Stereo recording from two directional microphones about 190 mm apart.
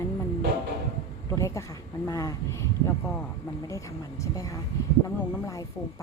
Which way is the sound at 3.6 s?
15° left (ahead or behind).